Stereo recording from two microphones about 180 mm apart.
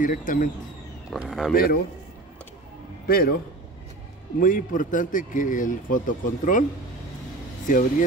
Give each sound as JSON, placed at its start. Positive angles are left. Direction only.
{"t": 0.0, "sound": "speech", "side_deg": 50}
{"t": 1.1, "sound": "speech", "side_deg": 0}
{"t": 1.5, "sound": "speech", "side_deg": 55}
{"t": 3.1, "sound": "speech", "side_deg": 60}
{"t": 4.4, "sound": "speech", "side_deg": 50}
{"t": 7.7, "sound": "speech", "side_deg": 45}